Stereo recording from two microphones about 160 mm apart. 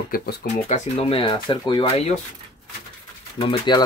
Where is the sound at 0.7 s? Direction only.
40° left (ahead or behind).